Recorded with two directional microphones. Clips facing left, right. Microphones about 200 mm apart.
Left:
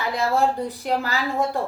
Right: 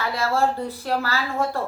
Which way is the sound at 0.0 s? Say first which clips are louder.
Left 1 dB; 15° left (ahead or behind).